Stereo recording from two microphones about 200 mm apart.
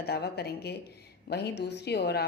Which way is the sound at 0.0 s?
55° left (ahead or behind).